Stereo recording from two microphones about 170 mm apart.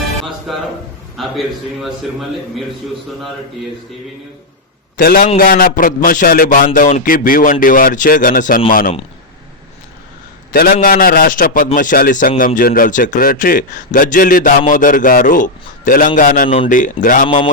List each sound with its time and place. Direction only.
0.5 s a sound: centre (ahead or behind)
4.9 s speech: 60° left (ahead or behind)
10.5 s a man's voice: 60° left (ahead or behind)